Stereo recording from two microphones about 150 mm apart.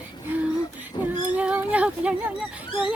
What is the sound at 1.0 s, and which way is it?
Speech, 10° right (ahead or behind).